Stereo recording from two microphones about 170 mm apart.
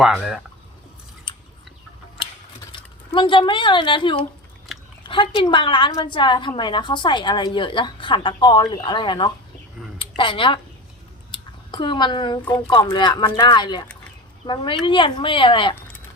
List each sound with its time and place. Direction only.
0.0 s speech: centre (ahead or behind)
1.3 s scissors: 30° left (ahead or behind)
2.6 s a woman's voice: 30° left (ahead or behind)
11.3 s a sound: 30° left (ahead or behind)
12.5 s a woman's voice: 25° left (ahead or behind)